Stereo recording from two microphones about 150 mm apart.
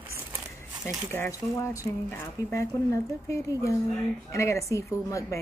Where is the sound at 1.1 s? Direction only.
20° left (ahead or behind).